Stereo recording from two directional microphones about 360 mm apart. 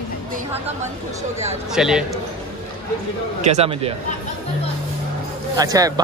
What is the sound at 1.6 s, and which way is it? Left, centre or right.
Speech, centre.